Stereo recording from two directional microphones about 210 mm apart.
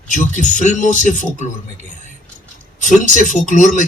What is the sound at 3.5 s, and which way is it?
Speech, 35° left (ahead or behind).